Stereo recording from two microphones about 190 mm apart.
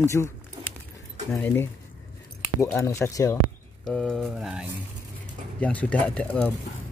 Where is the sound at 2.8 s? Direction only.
15° left (ahead or behind).